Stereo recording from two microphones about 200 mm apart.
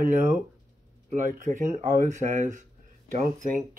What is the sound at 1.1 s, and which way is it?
Speech, 40° right (ahead or behind).